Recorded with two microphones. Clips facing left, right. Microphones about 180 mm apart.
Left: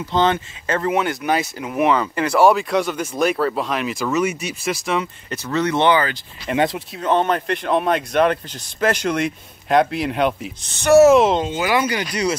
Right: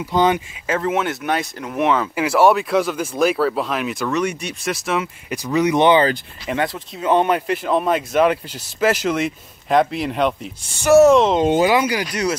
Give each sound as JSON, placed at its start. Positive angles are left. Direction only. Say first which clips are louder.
{"t": 0.0, "sound": "speech", "louder": "right 1 dB", "side_deg": -10}
{"t": 5.3, "sound": "speech", "louder": "right 3 dB", "side_deg": -15}
{"t": 6.5, "sound": "speech", "louder": "left 3 dB", "side_deg": 20}
{"t": 7.0, "sound": "speech", "louder": "right 2 dB", "side_deg": -10}
{"t": 10.6, "sound": "speech", "louder": "even", "side_deg": -10}
{"t": 11.0, "sound": "speech", "louder": "left 1 dB", "side_deg": 5}
{"t": 11.7, "sound": "speech", "louder": "right 2 dB", "side_deg": -10}